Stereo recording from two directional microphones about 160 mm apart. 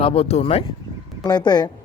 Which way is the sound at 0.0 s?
35° left (ahead or behind).